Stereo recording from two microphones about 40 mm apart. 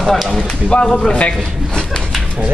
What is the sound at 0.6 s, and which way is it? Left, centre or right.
Speech, left.